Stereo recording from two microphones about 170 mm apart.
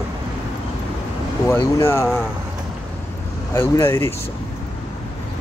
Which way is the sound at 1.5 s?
15° left (ahead or behind).